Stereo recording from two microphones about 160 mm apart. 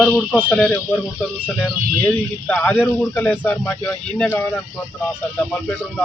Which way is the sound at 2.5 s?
10° left (ahead or behind).